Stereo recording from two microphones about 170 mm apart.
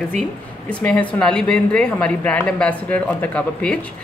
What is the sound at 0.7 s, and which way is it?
A woman's voice, 5° left (ahead or behind).